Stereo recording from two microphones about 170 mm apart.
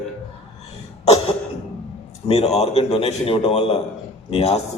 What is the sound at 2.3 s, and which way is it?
A man's voice, 40° left (ahead or behind).